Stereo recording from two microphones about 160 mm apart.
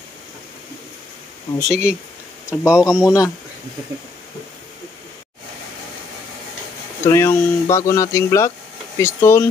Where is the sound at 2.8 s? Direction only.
20° left (ahead or behind).